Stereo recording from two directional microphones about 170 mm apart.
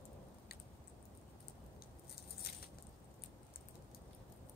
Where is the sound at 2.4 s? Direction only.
70° left (ahead or behind).